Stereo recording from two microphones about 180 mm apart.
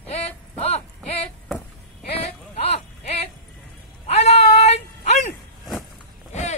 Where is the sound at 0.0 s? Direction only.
35° left (ahead or behind).